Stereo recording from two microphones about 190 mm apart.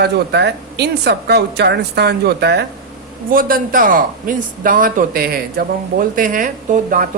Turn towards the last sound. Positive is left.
turn(degrees=-45)  # may be behind; listen again after turning